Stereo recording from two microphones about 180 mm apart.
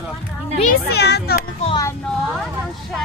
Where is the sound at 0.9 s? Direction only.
65° left (ahead or behind).